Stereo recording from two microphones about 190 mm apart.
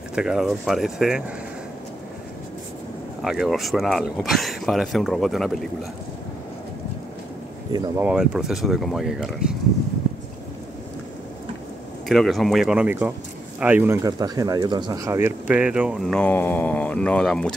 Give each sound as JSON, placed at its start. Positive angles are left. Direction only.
{"t": 0.1, "sound": "speech", "side_deg": -5}
{"t": 3.2, "sound": "speech", "side_deg": 0}
{"t": 7.7, "sound": "speech", "side_deg": -20}
{"t": 8.0, "sound": "speech", "side_deg": -5}
{"t": 12.1, "sound": "speech", "side_deg": 0}
{"t": 14.0, "sound": "speech", "side_deg": -20}